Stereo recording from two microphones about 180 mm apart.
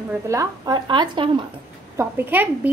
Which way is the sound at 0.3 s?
20° right (ahead or behind).